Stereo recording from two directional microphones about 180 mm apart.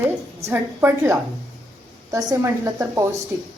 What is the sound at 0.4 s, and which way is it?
A woman's voice, 10° right (ahead or behind).